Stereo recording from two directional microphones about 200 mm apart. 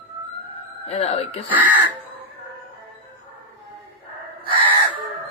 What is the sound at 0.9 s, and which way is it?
Speech, 30° left (ahead or behind).